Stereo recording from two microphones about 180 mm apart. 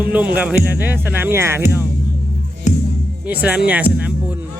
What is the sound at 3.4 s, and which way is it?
Speech, 5° right (ahead or behind).